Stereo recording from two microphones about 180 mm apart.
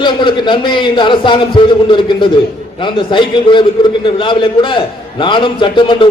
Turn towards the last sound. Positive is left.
turn(degrees=25)  # may be behind; listen again after turning